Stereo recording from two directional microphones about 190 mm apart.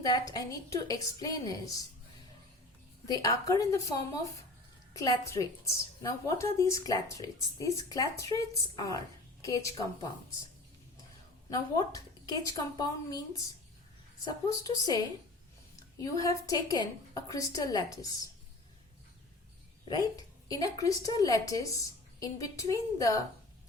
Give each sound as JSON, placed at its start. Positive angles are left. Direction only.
{"t": 0.0, "sound": "a woman's voice", "side_deg": 20}
{"t": 3.1, "sound": "a woman's voice", "side_deg": 15}
{"t": 11.5, "sound": "a woman's voice", "side_deg": 20}
{"t": 20.5, "sound": "a woman's voice", "side_deg": 20}